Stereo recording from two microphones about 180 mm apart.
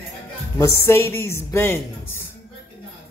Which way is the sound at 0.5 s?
15° left (ahead or behind).